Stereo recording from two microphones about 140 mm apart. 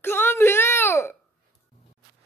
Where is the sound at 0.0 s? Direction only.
15° left (ahead or behind).